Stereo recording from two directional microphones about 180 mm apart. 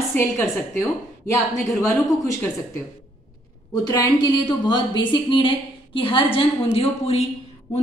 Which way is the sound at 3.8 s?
20° left (ahead or behind).